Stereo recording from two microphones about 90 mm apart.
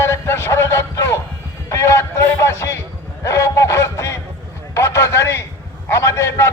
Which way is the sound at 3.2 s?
35° left (ahead or behind).